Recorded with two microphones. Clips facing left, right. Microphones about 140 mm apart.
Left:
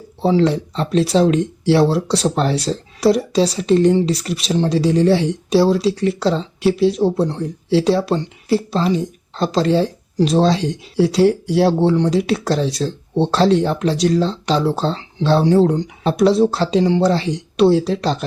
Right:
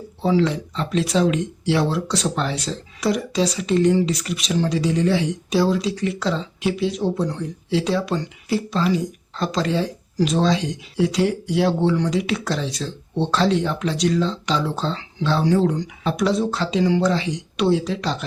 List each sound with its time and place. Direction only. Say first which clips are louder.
0.2 s speech: left 4 dB; 35° left (ahead or behind)